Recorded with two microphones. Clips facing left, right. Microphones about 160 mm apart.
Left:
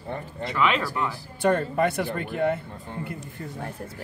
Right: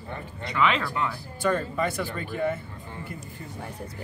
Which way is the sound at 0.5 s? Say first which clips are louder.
Even; 5° left (ahead or behind).